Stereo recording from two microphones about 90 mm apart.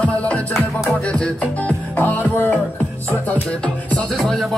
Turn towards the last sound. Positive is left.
turn(degrees=5)  # may be behind; listen again after turning